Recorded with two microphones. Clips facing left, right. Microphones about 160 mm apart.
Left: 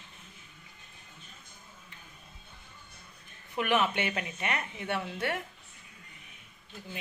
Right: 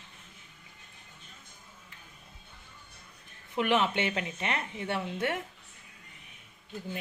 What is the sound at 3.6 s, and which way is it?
A woman's voice, 25° right (ahead or behind).